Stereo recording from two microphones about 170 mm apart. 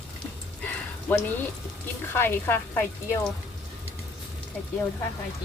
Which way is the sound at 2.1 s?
15° left (ahead or behind).